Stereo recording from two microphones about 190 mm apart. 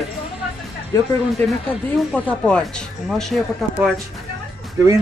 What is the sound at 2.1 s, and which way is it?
Speech, 5° left (ahead or behind).